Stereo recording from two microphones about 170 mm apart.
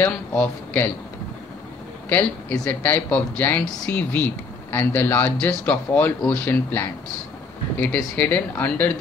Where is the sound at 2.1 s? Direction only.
10° left (ahead or behind).